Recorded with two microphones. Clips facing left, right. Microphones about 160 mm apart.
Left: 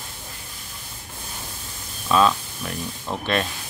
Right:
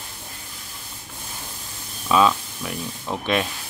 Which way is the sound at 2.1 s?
5° right (ahead or behind).